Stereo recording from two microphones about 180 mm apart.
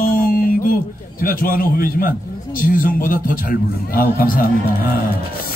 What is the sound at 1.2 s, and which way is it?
A man's voice, 50° left (ahead or behind).